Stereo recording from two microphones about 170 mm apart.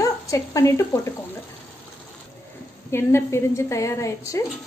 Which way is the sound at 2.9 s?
15° left (ahead or behind).